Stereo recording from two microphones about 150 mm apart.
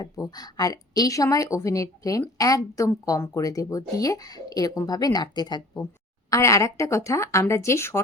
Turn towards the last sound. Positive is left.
turn(degrees=20)  # may be behind; listen again after turning